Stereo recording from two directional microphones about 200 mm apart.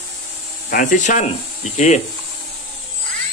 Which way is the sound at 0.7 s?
40° left (ahead or behind).